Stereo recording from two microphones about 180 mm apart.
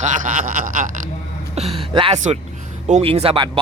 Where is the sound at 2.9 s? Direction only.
35° right (ahead or behind).